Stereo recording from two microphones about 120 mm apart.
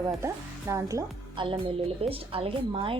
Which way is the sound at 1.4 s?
50° right (ahead or behind).